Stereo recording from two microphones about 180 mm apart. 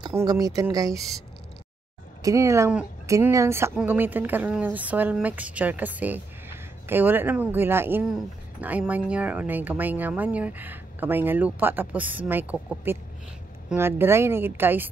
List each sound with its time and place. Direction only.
0.0 s speech: 20° right (ahead or behind)
2.2 s speech: 15° right (ahead or behind)